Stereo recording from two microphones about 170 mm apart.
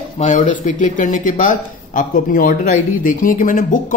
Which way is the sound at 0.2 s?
45° left (ahead or behind).